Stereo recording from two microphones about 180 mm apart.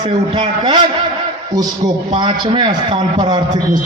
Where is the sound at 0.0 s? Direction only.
25° right (ahead or behind).